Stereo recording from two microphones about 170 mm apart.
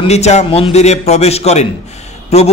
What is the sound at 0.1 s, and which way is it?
A man's voice, 40° left (ahead or behind).